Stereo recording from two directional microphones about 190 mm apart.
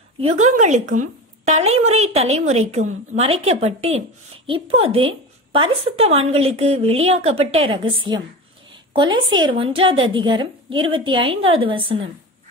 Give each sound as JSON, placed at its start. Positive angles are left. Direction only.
{"t": 0.4, "sound": "a woman's voice", "side_deg": -40}